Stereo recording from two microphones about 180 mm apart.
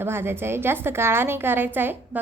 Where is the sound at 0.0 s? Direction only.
10° right (ahead or behind).